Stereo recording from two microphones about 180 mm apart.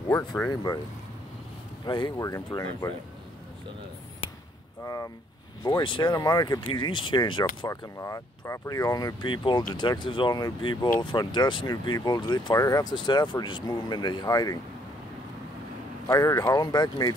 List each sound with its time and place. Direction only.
0.1 s speech: 15° left (ahead or behind)
1.9 s speech: 25° left (ahead or behind)
4.8 s speech: 20° left (ahead or behind)
16.1 s speech: 20° left (ahead or behind)